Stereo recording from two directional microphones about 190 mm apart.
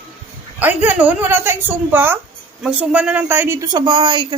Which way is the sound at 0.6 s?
10° right (ahead or behind).